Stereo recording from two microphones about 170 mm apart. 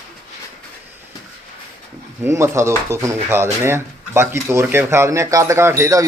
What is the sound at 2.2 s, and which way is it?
Speech, 15° right (ahead or behind).